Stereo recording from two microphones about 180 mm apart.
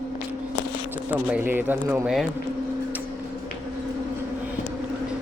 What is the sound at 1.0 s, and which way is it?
A man's voice, 10° right (ahead or behind).